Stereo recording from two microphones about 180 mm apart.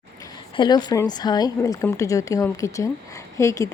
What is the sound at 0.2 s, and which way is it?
A woman's voice, 25° left (ahead or behind).